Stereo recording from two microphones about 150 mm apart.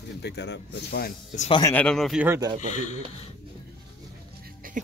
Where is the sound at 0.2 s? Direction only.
90° left.